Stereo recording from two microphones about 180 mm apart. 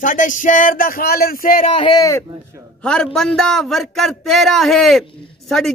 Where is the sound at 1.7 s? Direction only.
25° left (ahead or behind).